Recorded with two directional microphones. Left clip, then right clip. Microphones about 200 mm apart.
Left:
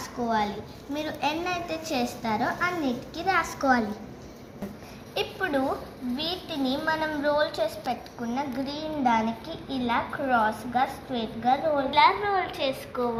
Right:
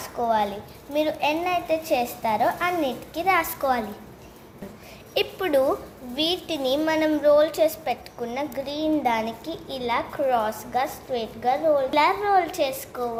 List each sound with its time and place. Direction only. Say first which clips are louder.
0.0 s a woman's voice: right 4 dB; 35° right (ahead or behind)
5.1 s a woman's voice: right 6 dB; 45° right (ahead or behind)